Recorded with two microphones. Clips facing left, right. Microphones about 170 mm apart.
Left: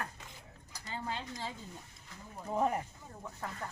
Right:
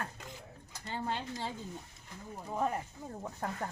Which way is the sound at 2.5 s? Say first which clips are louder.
Left 2 dB; 5° left (ahead or behind).